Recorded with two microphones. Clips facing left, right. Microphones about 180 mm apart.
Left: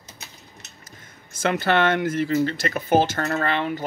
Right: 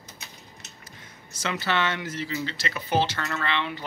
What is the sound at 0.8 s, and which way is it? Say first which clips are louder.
Speech: even; 50° left (ahead or behind).